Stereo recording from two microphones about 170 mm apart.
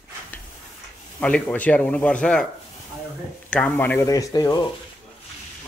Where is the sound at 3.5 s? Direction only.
10° left (ahead or behind).